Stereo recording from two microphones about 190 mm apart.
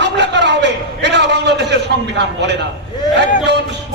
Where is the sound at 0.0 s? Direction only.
65° right (ahead or behind).